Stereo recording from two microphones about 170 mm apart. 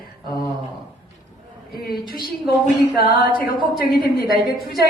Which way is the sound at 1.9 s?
60° left (ahead or behind).